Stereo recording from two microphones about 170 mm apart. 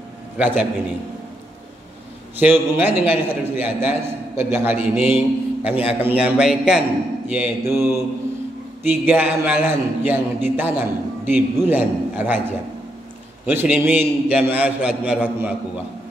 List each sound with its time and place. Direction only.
0.4 s a man's voice: 10° right (ahead or behind)
2.3 s a man's voice: 10° right (ahead or behind)
8.8 s a man's voice: 10° right (ahead or behind)